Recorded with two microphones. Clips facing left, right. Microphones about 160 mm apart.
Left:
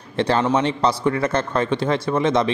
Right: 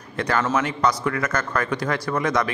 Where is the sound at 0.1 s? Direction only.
30° left (ahead or behind).